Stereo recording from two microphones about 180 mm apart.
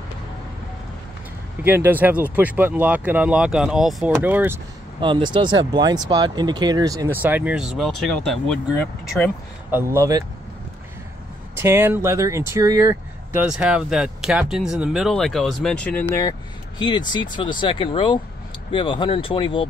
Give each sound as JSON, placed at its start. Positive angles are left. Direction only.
{"t": 1.6, "sound": "speech", "side_deg": -10}
{"t": 5.0, "sound": "speech", "side_deg": -25}
{"t": 9.8, "sound": "speech", "side_deg": -15}
{"t": 11.5, "sound": "speech", "side_deg": -15}
{"t": 16.2, "sound": "speech", "side_deg": 20}